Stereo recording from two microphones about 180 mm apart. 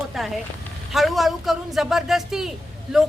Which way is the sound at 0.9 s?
Centre (ahead or behind).